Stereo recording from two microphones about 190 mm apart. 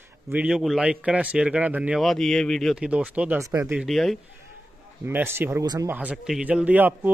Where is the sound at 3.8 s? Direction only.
Centre (ahead or behind).